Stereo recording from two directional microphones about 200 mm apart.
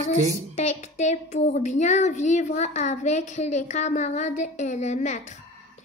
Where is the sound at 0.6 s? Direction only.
35° left (ahead or behind).